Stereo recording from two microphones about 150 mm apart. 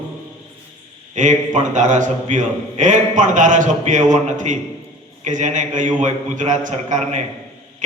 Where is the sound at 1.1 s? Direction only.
55° right (ahead or behind).